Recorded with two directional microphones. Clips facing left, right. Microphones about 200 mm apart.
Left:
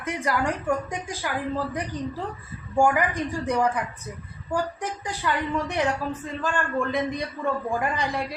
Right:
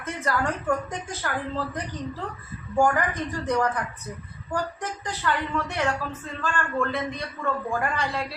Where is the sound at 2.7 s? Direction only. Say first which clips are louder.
Left 1 dB; 10° left (ahead or behind).